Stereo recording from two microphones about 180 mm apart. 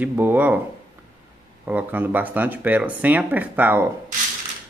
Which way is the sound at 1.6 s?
10° right (ahead or behind).